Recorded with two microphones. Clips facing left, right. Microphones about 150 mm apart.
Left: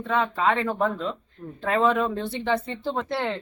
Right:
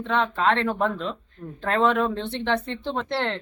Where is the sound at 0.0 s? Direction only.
10° left (ahead or behind).